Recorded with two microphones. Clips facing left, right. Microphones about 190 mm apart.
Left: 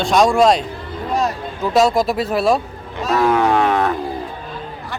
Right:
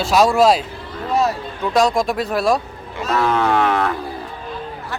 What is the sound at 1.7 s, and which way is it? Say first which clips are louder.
Speech: left 2 dB; 5° left (ahead or behind).